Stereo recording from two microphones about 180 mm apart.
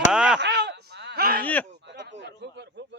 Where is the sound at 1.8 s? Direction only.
80° right.